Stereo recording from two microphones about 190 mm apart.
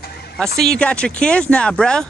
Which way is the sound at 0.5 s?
5° left (ahead or behind).